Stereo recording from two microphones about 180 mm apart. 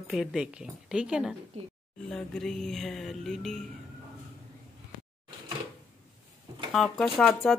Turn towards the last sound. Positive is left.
turn(degrees=0)  # may be behind; listen again after turning